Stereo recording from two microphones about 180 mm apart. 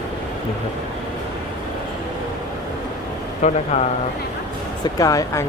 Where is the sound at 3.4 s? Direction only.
40° left (ahead or behind).